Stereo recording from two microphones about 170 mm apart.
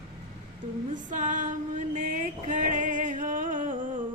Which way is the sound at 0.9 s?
50° right (ahead or behind).